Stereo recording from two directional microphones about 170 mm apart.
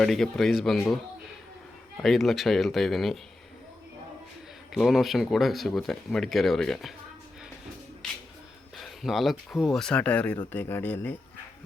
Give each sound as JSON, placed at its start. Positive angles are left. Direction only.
{"t": 0.0, "sound": "speech", "side_deg": 0}
{"t": 2.0, "sound": "speech", "side_deg": 0}
{"t": 4.7, "sound": "speech", "side_deg": 0}
{"t": 8.7, "sound": "speech", "side_deg": 0}